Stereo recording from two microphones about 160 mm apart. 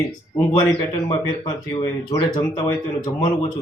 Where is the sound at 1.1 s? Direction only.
30° left (ahead or behind).